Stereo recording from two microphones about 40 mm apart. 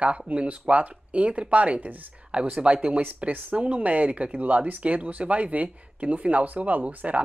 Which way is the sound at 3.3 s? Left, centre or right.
Right.